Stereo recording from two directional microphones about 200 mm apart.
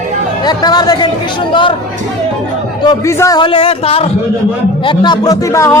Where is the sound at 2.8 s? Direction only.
15° left (ahead or behind).